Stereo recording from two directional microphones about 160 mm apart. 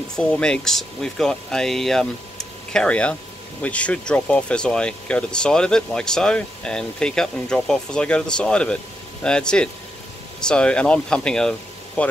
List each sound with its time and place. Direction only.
0.1 s speech: 5° left (ahead or behind)